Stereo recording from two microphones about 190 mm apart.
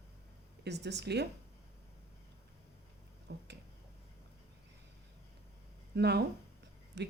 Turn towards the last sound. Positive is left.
turn(degrees=-65)  # may be behind; listen again after turning